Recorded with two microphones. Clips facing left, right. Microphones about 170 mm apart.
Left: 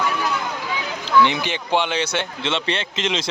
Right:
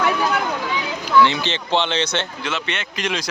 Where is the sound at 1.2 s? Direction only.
15° left (ahead or behind).